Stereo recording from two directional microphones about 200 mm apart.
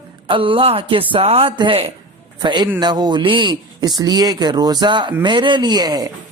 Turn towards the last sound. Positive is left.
turn(degrees=-20)  # may be behind; listen again after turning